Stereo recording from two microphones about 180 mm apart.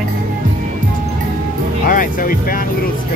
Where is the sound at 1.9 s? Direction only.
50° left (ahead or behind).